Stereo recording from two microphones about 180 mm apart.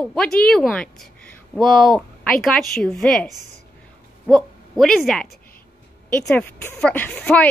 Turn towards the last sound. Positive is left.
turn(degrees=10)  # may be behind; listen again after turning